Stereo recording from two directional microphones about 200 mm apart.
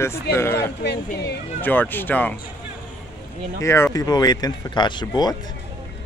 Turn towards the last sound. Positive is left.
turn(degrees=20)  # may be behind; listen again after turning